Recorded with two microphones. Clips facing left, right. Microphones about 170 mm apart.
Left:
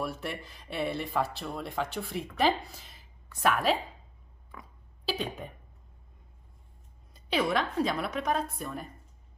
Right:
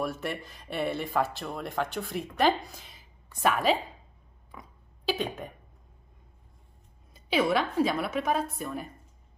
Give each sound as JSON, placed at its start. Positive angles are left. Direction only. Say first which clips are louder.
{"t": 0.0, "sound": "speech", "louder": "right 3 dB", "side_deg": 0}
{"t": 5.0, "sound": "speech", "louder": "right 3 dB", "side_deg": 0}
{"t": 7.2, "sound": "speech", "louder": "right 3 dB", "side_deg": 0}